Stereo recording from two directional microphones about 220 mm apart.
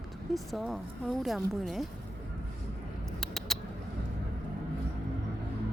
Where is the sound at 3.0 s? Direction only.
Centre (ahead or behind).